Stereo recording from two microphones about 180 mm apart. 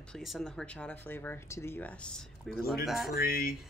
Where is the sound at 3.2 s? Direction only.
55° left (ahead or behind).